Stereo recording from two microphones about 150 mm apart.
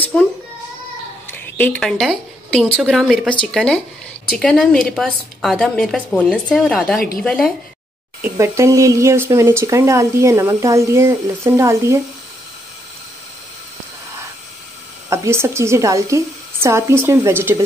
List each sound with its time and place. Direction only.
0.0 s speech: 5° left (ahead or behind)
1.3 s a woman's voice: 10° left (ahead or behind)
7.0 s a woman's voice: 75° left (ahead or behind)
7.2 s a woman's voice: centre (ahead or behind)
8.2 s speech: 20° right (ahead or behind)
15.0 s speech: 20° right (ahead or behind)